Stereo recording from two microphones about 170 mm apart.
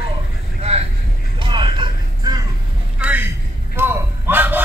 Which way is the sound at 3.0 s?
10° right (ahead or behind).